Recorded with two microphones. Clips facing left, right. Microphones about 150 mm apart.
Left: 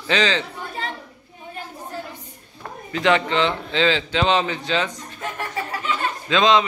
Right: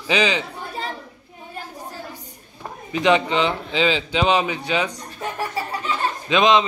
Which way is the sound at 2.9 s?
15° right (ahead or behind).